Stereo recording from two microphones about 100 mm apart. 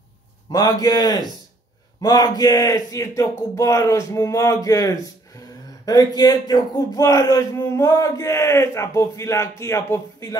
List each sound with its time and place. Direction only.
0.5 s a man's voice: 40° left (ahead or behind)